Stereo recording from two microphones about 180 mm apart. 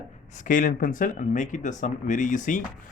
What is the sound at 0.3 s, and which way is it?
A man's voice, 45° left (ahead or behind).